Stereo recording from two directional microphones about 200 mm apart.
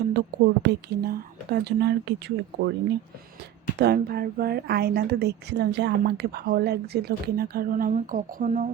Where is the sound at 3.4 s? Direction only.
55° right (ahead or behind).